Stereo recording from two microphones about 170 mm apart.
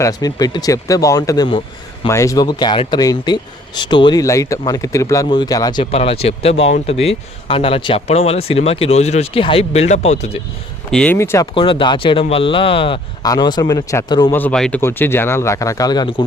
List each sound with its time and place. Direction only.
0.0 s speech: 20° left (ahead or behind)
5.8 s speech: 35° left (ahead or behind)
10.9 s speech: 10° left (ahead or behind)
11.5 s speech: 30° left (ahead or behind)
14.3 s speech: 5° left (ahead or behind); by 16.2 s 25° left (ahead or behind)